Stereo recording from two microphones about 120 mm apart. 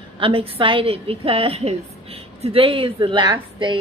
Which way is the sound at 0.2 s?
50° right (ahead or behind).